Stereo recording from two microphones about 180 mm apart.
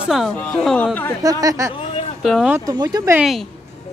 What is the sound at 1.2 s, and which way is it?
Speech, 20° right (ahead or behind).